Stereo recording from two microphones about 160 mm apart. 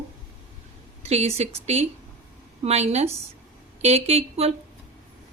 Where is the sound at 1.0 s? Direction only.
40° right (ahead or behind).